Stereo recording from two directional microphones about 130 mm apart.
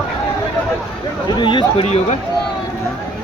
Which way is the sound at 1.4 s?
40° left (ahead or behind).